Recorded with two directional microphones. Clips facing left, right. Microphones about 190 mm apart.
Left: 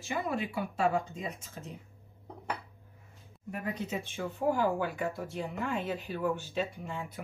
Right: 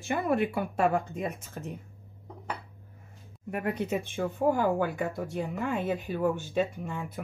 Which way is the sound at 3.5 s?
60° right (ahead or behind).